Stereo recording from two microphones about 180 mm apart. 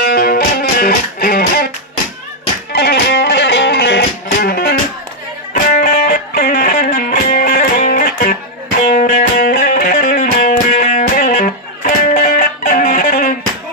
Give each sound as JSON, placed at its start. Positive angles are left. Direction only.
{"t": 0.0, "sound": "music", "side_deg": 55}
{"t": 2.7, "sound": "music", "side_deg": 65}